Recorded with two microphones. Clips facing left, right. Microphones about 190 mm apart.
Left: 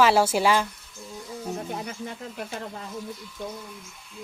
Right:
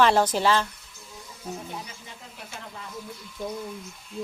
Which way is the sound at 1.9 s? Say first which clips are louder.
Left 10 dB; 55° left (ahead or behind).